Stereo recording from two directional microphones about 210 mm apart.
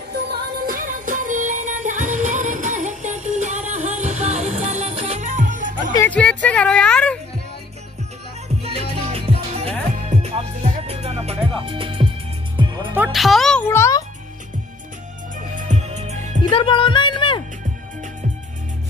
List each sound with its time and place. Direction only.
0.1 s music: 45° right (ahead or behind)
5.9 s a woman's voice: 5° left (ahead or behind)
9.1 s music: 30° right (ahead or behind)
12.9 s music: 5° right (ahead or behind); by 14.0 s 15° left (ahead or behind)
15.5 s music: 35° right (ahead or behind)
16.5 s music: 25° left (ahead or behind)